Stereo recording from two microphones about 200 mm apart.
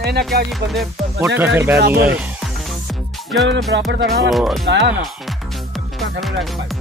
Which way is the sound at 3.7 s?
65° right (ahead or behind).